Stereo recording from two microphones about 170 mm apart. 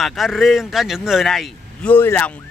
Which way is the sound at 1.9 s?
10° left (ahead or behind).